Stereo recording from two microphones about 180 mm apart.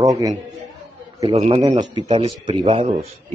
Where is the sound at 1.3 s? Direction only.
35° right (ahead or behind).